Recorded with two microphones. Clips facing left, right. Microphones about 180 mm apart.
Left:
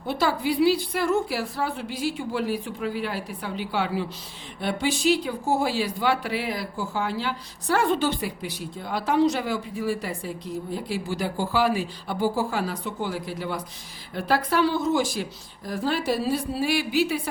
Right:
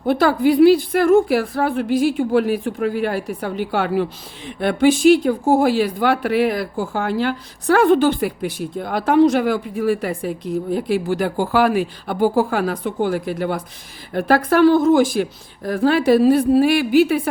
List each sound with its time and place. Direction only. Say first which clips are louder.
0.0 s a woman's voice: right 9 dB; 55° right (ahead or behind)